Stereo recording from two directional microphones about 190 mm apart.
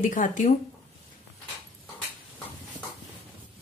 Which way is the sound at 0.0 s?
45° left (ahead or behind).